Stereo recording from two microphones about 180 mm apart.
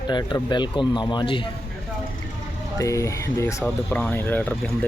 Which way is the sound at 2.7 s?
15° left (ahead or behind).